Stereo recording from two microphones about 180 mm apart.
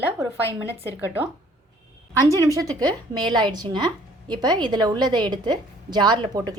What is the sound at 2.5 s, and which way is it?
A woman's voice, 20° right (ahead or behind).